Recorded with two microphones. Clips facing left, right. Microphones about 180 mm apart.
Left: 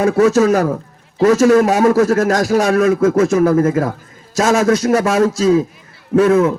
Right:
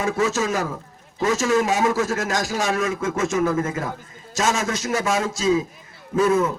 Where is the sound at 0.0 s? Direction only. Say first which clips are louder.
Left 10 dB; 60° left (ahead or behind).